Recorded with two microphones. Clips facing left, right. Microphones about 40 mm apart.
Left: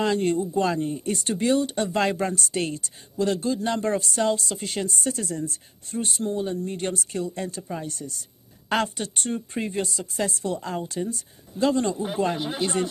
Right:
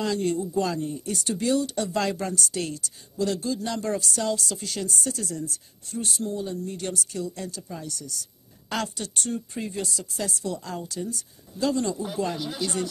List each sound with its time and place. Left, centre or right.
0.0 s speech: left